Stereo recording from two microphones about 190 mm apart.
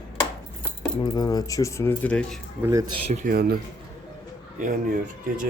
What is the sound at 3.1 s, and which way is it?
Speech, 45° right (ahead or behind).